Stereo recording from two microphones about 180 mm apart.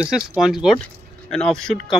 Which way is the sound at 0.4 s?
Centre (ahead or behind).